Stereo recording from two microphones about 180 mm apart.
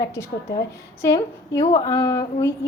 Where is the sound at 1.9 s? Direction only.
20° left (ahead or behind).